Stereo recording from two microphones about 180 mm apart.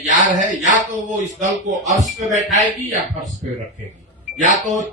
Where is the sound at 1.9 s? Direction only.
Centre (ahead or behind).